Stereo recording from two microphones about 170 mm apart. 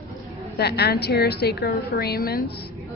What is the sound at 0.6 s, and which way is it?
A woman's voice, 70° left (ahead or behind).